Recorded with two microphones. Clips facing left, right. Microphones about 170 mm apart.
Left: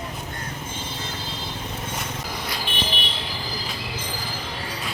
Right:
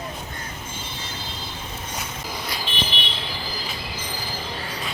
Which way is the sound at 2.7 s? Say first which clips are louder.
Right 1 dB; 55° left (ahead or behind).